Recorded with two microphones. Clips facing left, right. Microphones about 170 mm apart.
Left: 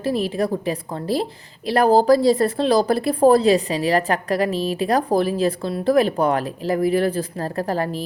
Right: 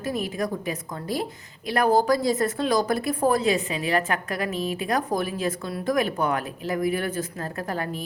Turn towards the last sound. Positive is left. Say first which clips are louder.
# left 7 dB
turn(degrees=35)  # may be behind; listen again after turning